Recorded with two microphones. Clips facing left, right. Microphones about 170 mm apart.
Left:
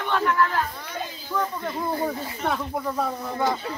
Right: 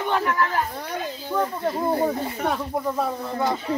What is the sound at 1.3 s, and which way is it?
Speech, 30° right (ahead or behind).